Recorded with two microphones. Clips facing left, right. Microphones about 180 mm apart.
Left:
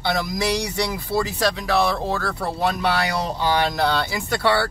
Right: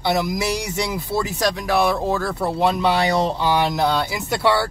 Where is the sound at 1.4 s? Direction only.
15° right (ahead or behind).